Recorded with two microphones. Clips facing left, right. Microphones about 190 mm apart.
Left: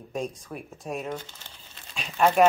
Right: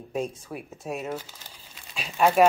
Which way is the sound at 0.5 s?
5° right (ahead or behind).